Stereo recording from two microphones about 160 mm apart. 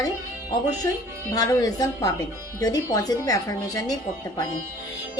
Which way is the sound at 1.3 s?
25° left (ahead or behind).